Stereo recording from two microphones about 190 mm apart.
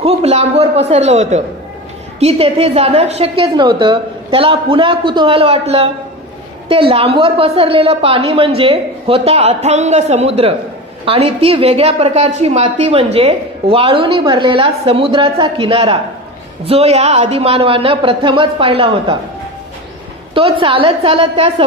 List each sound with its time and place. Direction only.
0.0 s a woman's voice: 35° right (ahead or behind)
6.9 s a woman's voice: 30° right (ahead or behind)
20.3 s a woman's voice: 30° right (ahead or behind)